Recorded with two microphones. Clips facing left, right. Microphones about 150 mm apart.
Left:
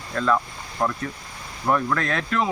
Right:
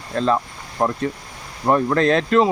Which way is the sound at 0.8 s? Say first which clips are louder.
Right 5 dB; 35° right (ahead or behind).